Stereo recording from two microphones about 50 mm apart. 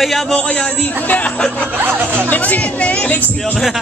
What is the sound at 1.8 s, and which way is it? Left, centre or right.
Speech, right.